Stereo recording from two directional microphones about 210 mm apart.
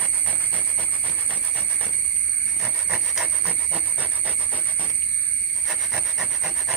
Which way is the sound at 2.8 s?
5° right (ahead or behind).